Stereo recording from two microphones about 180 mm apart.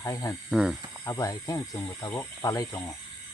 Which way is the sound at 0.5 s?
5° right (ahead or behind).